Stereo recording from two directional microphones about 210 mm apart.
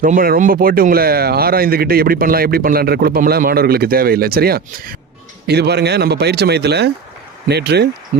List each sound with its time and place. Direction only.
0.0 s speech: 40° right (ahead or behind)